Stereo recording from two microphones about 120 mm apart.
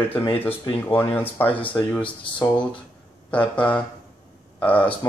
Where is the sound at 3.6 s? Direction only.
10° left (ahead or behind).